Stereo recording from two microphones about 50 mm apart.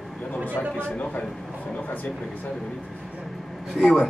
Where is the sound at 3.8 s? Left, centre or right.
Centre.